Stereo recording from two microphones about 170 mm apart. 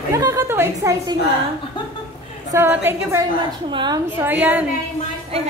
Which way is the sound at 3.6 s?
25° right (ahead or behind).